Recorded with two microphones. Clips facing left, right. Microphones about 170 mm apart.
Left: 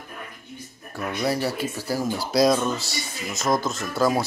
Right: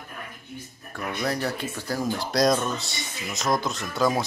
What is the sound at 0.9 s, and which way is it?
Speech, 10° left (ahead or behind).